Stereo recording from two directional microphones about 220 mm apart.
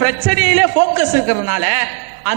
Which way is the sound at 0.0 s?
10° right (ahead or behind).